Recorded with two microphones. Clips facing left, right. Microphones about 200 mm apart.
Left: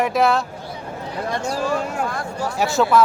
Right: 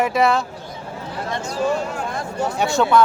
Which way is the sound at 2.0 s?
20° right (ahead or behind).